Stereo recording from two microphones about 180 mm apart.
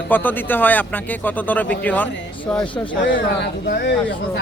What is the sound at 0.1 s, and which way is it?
Speech, 10° left (ahead or behind).